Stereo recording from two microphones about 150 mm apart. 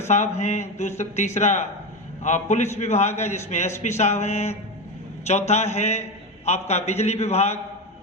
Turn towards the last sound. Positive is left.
turn(degrees=45)  # may be behind; listen again after turning